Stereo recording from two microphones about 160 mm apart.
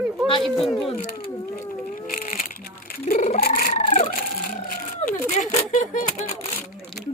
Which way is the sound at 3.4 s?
60° left (ahead or behind).